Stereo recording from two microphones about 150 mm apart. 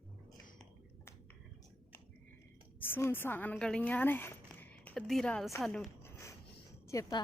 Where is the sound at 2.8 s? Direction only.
15° left (ahead or behind).